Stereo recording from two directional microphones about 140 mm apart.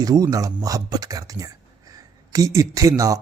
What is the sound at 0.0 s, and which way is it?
Speech, 25° right (ahead or behind).